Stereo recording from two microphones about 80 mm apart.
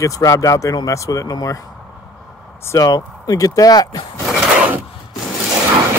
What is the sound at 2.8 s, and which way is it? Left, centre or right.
Speech, left.